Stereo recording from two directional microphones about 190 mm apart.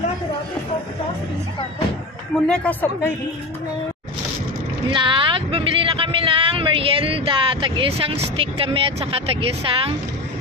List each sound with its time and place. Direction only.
2.4 s speech: 5° left (ahead or behind)
4.8 s speech: 25° right (ahead or behind)